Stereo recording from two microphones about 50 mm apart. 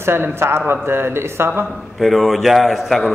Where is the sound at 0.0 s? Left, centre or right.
Right.